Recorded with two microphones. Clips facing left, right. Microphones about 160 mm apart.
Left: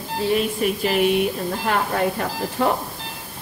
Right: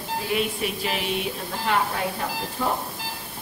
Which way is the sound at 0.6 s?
45° left (ahead or behind).